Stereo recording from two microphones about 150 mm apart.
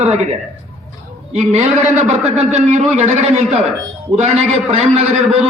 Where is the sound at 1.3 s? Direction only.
50° right (ahead or behind).